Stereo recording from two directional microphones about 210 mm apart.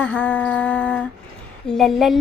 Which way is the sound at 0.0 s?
10° left (ahead or behind).